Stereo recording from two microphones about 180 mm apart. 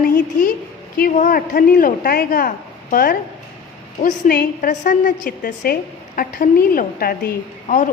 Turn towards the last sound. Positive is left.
turn(degrees=45)  # may be behind; listen again after turning